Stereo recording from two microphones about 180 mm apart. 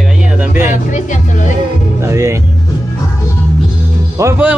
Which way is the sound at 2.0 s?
15° right (ahead or behind).